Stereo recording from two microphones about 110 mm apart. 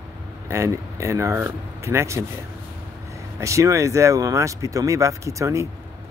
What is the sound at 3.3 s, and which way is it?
A man's voice, 30° right (ahead or behind).